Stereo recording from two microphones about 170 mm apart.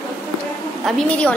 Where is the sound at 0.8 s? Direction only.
5° left (ahead or behind).